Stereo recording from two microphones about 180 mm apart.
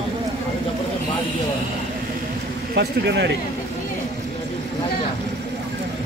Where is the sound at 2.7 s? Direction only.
70° right (ahead or behind).